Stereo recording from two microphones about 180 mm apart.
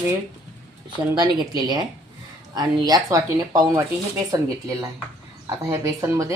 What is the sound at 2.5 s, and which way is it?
Speech, 20° right (ahead or behind).